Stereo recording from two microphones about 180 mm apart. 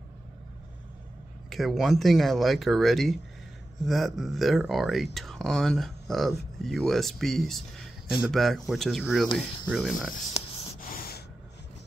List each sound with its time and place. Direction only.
1.5 s speech: centre (ahead or behind)
10.4 s a sound: 35° left (ahead or behind)
10.9 s spray: 60° left (ahead or behind)